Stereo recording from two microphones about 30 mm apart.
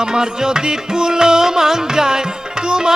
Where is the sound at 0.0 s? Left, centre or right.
Right.